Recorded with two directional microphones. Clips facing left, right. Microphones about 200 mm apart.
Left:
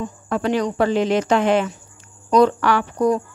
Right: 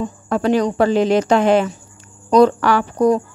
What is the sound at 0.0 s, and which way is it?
Speech, 40° right (ahead or behind).